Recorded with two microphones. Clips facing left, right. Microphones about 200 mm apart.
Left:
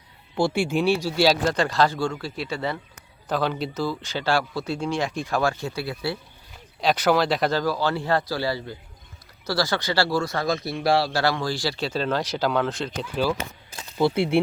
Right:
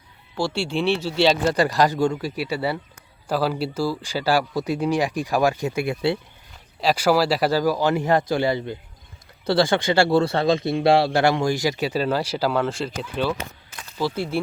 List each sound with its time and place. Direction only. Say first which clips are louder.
0.7 s speech: left 1 dB; 10° left (ahead or behind)
1.5 s a man's voice: right 2 dB; 10° right (ahead or behind)
6.8 s a man's voice: right 2 dB; 5° right (ahead or behind)
14.2 s speech: left 5 dB; 65° left (ahead or behind)